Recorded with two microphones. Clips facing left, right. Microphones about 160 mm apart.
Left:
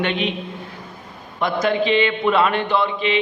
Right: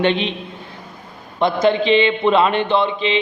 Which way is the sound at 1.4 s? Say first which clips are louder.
Right 4 dB; 25° right (ahead or behind).